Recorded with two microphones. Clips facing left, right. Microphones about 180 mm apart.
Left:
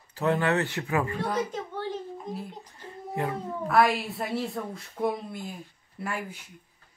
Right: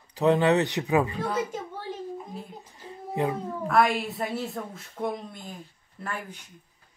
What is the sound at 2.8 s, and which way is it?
Child singing, 20° right (ahead or behind).